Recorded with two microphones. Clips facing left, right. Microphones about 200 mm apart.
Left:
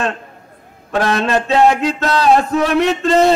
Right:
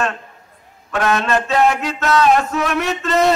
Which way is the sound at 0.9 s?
35° left (ahead or behind).